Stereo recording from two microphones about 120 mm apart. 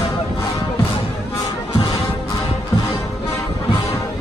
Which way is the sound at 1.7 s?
45° left (ahead or behind).